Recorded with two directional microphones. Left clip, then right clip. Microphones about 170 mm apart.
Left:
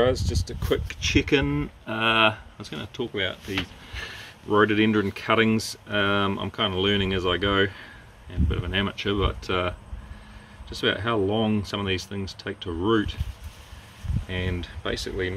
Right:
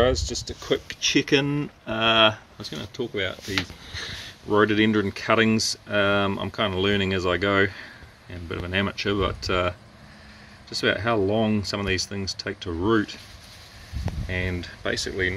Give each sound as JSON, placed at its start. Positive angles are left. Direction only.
{"t": 0.2, "sound": "speech", "side_deg": 25}
{"t": 0.5, "sound": "speech", "side_deg": -5}
{"t": 14.2, "sound": "speech", "side_deg": -5}